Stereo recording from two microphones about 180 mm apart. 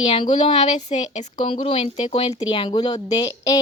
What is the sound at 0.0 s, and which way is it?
A woman's voice, 30° left (ahead or behind).